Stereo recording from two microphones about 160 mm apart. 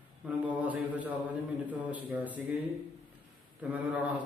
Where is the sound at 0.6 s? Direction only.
10° right (ahead or behind).